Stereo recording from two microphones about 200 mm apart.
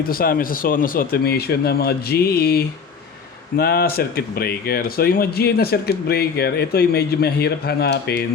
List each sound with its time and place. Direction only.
0.1 s speech: 45° left (ahead or behind)